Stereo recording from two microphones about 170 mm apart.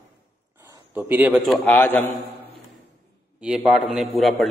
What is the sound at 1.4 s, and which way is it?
Speech, 10° left (ahead or behind).